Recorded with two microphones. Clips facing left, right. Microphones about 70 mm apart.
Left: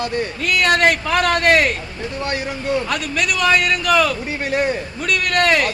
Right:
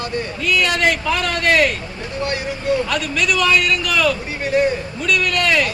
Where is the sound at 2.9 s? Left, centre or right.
Left.